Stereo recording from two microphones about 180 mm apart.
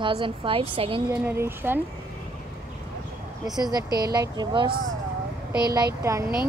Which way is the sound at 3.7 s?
20° right (ahead or behind).